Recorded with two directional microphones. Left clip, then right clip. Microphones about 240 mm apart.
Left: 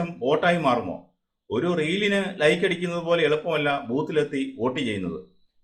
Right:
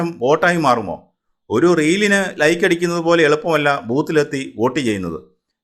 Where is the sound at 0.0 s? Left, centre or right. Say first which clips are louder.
Right 7 dB; right.